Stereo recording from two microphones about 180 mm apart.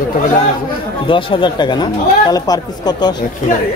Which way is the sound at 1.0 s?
30° left (ahead or behind).